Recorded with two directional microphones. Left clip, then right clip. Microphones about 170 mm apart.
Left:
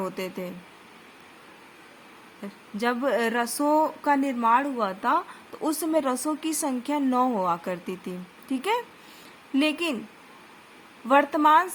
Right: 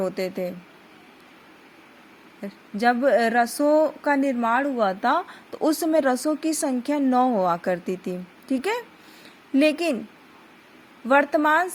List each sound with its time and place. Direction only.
0.0 s a woman's voice: 20° right (ahead or behind)
2.4 s a woman's voice: 25° right (ahead or behind)
11.1 s a woman's voice: 20° right (ahead or behind)